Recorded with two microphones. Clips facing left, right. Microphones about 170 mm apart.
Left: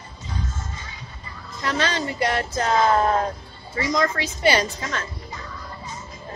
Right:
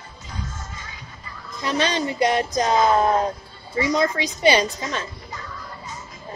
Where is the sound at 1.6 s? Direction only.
15° right (ahead or behind).